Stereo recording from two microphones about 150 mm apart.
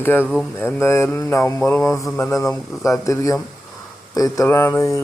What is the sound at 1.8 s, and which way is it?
Speech, 20° left (ahead or behind).